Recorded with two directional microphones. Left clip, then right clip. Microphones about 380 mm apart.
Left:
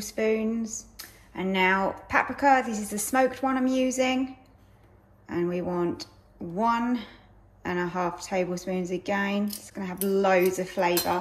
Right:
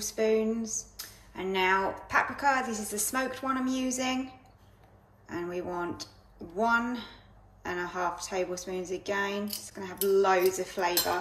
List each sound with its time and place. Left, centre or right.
0.0 s speech: centre
5.2 s speech: centre